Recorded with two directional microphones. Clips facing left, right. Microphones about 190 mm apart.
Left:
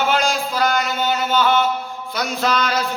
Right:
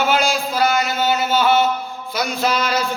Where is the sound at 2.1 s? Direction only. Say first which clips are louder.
Even; 5° right (ahead or behind).